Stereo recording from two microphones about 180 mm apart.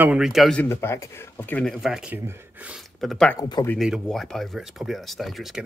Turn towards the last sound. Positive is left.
turn(degrees=0)  # may be behind; listen again after turning